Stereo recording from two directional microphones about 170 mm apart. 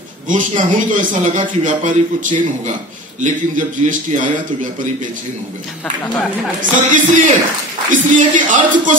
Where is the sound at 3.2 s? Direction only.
45° right (ahead or behind).